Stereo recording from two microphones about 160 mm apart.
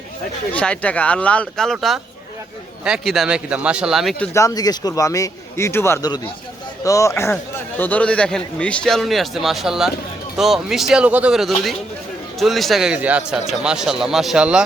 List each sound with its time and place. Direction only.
0.5 s a man's voice: 10° left (ahead or behind)
4.4 s a man's voice: 20° left (ahead or behind); by 14.6 s 5° right (ahead or behind)